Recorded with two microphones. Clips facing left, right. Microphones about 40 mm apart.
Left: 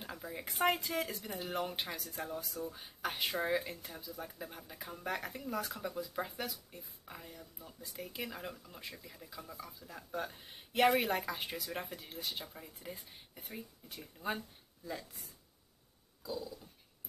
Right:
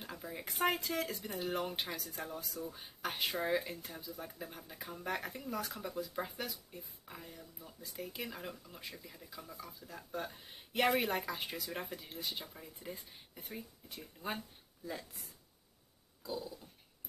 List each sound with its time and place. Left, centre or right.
0.0 s speech: centre
16.2 s dog: centre